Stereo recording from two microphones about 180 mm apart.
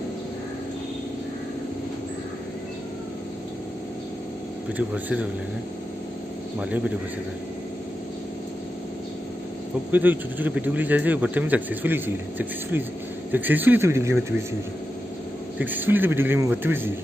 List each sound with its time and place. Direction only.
4.7 s speech: 10° right (ahead or behind)
9.8 s speech: 10° right (ahead or behind)
15.6 s speech: 10° right (ahead or behind)